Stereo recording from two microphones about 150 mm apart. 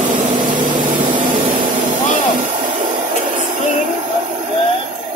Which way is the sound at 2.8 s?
60° right (ahead or behind).